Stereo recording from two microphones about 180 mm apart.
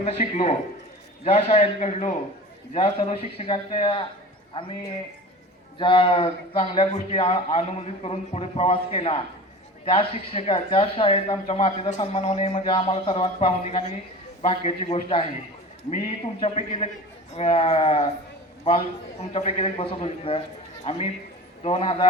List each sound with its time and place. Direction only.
0.0 s a man's voice: 35° left (ahead or behind)
19.3 s speech: 35° left (ahead or behind)
21.6 s speech: 30° left (ahead or behind)